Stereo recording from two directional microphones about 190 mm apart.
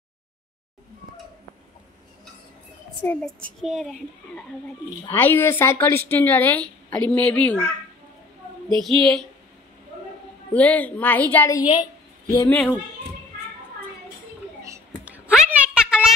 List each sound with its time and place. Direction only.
3.0 s a child's voice: 10° left (ahead or behind)
5.0 s a woman's voice: 10° left (ahead or behind)
8.6 s a child's voice: centre (ahead or behind)
10.5 s a woman's voice: 10° left (ahead or behind)
11.8 s a sound: 15° left (ahead or behind)
15.0 s a sound: 5° right (ahead or behind)